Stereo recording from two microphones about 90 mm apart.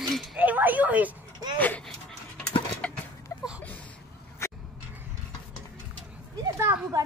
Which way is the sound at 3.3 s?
35° left (ahead or behind).